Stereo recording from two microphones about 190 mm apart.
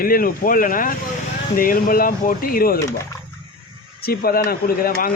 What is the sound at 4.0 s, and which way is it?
Speech, 55° left (ahead or behind).